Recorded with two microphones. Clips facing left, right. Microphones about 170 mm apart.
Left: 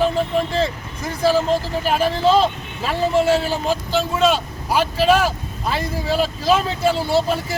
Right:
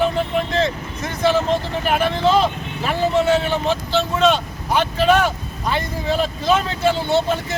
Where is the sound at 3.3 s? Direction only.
30° left (ahead or behind).